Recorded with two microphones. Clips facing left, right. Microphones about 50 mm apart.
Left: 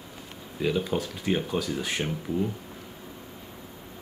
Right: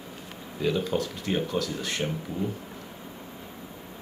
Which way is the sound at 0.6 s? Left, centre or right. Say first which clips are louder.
Even; centre.